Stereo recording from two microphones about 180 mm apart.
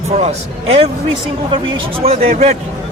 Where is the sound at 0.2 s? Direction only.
35° right (ahead or behind).